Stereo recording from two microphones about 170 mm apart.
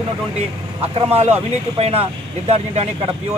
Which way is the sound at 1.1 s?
40° right (ahead or behind).